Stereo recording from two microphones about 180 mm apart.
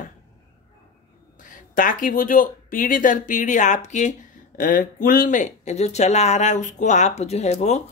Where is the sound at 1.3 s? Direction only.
45° left (ahead or behind).